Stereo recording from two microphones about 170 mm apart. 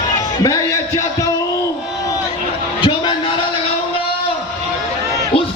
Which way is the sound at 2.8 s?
30° left (ahead or behind).